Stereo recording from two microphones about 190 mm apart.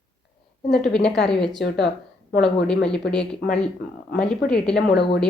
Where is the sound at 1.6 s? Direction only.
60° left (ahead or behind).